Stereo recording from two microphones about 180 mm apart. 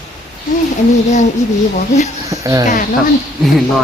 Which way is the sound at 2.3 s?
20° right (ahead or behind).